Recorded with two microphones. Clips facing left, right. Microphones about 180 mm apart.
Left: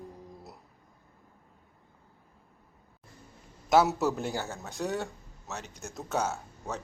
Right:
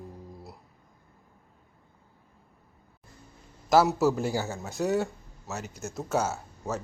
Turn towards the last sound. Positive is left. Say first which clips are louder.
# right 3 dB
turn(degrees=0)  # may be behind; listen again after turning